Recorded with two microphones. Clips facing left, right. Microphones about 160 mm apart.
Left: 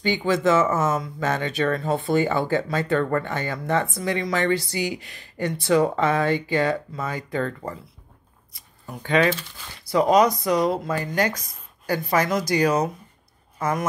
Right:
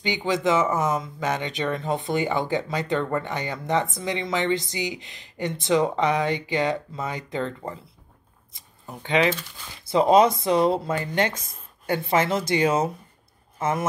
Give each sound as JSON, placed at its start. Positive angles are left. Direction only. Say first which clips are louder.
{"t": 0.0, "sound": "speech", "louder": "left 3 dB", "side_deg": -15}